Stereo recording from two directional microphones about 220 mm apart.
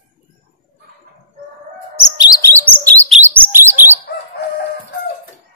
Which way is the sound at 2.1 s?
15° left (ahead or behind).